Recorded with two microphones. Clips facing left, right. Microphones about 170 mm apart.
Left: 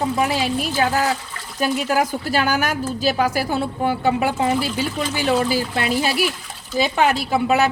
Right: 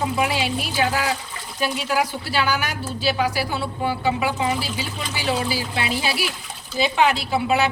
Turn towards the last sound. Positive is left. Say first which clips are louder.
# left 3 dB
turn(degrees=45)  # may be behind; listen again after turning